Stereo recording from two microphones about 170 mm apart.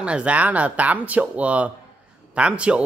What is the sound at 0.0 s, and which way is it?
Speech, 5° right (ahead or behind).